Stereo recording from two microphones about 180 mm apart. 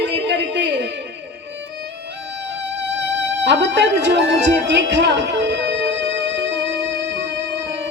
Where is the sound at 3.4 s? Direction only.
75° right (ahead or behind).